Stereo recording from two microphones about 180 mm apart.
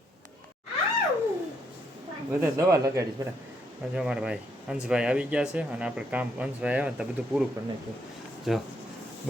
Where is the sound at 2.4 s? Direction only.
15° right (ahead or behind).